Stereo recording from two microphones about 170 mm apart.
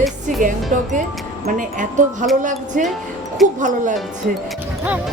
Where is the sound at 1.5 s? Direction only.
50° right (ahead or behind).